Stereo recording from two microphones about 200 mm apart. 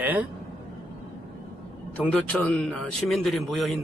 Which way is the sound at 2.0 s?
5° left (ahead or behind).